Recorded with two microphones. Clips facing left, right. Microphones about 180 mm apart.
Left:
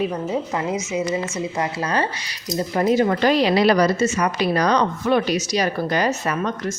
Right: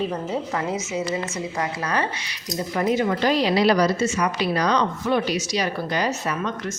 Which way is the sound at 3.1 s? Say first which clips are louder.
Left 3 dB; 65° left (ahead or behind).